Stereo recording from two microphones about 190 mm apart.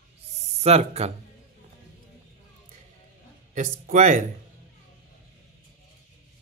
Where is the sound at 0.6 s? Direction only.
35° right (ahead or behind).